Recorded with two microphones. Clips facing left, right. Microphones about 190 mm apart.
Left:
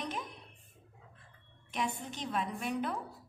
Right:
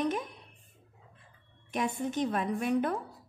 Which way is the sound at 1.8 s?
50° right (ahead or behind).